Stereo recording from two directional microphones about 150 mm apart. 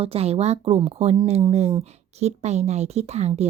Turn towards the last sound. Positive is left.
turn(degrees=-45)  # may be behind; listen again after turning